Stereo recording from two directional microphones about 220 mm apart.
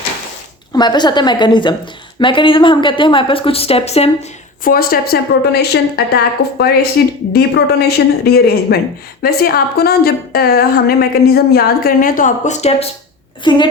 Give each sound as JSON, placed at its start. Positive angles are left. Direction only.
{"t": 0.7, "sound": "a woman's voice", "side_deg": 20}
{"t": 13.4, "sound": "a woman's voice", "side_deg": 20}